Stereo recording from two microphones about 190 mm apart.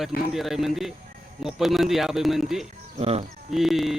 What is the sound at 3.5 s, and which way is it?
Speech, centre (ahead or behind).